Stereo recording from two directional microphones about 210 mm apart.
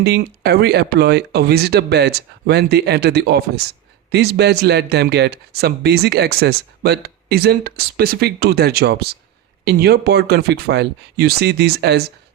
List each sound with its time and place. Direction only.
0.0 s speech: 50° right (ahead or behind)